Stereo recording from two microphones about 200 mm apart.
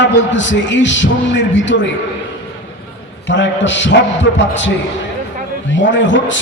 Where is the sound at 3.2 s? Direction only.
65° left (ahead or behind).